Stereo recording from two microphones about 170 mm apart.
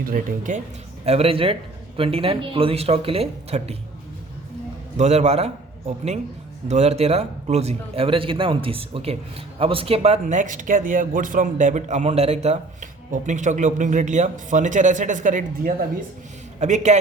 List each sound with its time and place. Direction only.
0.0 s speech: 55° right (ahead or behind)
1.0 s speech: 35° right (ahead or behind)
4.9 s speech: 40° right (ahead or behind)
6.7 s speech: 40° right (ahead or behind)